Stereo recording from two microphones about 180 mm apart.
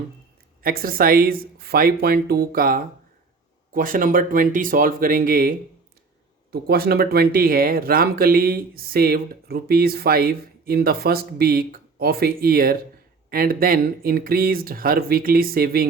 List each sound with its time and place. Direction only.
0.6 s speech: 55° right (ahead or behind)